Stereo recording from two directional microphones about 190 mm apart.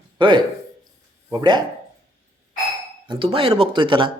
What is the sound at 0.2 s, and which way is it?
Speech, 25° right (ahead or behind).